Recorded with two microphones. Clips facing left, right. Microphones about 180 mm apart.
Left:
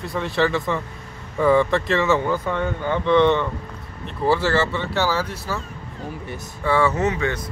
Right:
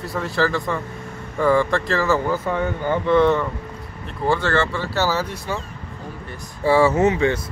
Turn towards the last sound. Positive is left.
turn(degrees=-25)  # may be behind; listen again after turning